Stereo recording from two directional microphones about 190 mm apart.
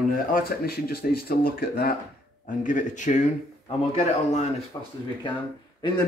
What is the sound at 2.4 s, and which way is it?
A man's voice, 40° left (ahead or behind).